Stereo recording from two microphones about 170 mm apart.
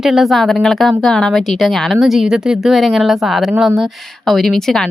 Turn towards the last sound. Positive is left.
turn(degrees=0)  # may be behind; listen again after turning